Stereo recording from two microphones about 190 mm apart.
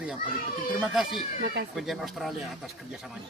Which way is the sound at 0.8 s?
Centre (ahead or behind).